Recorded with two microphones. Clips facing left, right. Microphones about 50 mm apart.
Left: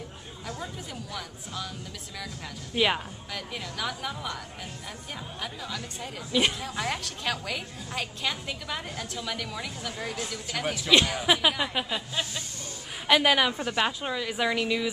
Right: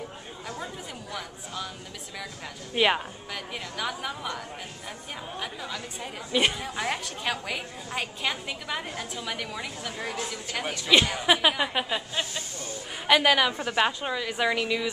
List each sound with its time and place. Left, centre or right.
1.1 s a woman's voice: centre
2.7 s a woman's voice: centre
5.4 s a woman's voice: centre